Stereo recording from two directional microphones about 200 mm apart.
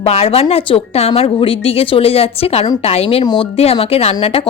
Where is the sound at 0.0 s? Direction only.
30° left (ahead or behind).